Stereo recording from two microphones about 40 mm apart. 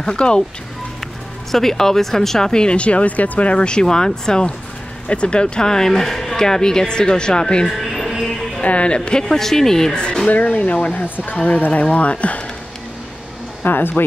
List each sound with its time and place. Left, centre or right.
0.0 s speech: left
1.5 s speech: centre
7.6 s a sound: centre
8.6 s speech: left
9.3 s speech: centre
10.3 s speech: left
13.7 s speech: left